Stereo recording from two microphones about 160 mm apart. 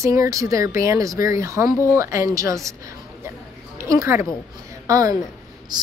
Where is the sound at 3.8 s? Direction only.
20° right (ahead or behind).